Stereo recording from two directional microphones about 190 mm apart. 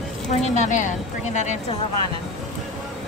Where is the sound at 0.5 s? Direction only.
40° left (ahead or behind).